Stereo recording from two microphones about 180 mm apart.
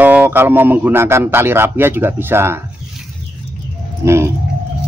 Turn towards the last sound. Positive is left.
turn(degrees=-15)  # may be behind; listen again after turning